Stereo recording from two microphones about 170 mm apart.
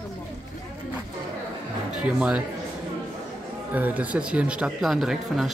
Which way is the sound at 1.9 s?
5° right (ahead or behind).